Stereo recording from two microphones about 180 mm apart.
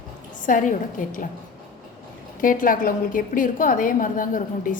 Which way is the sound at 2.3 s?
50° left (ahead or behind).